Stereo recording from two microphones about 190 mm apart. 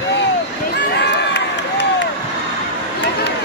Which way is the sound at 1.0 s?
65° left (ahead or behind).